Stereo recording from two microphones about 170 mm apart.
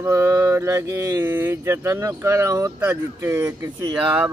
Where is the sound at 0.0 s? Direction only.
15° right (ahead or behind).